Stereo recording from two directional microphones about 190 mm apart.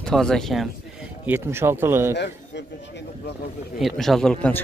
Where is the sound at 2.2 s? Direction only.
65° left (ahead or behind).